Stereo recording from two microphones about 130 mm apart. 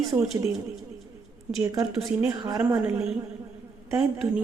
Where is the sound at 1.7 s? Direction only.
25° right (ahead or behind).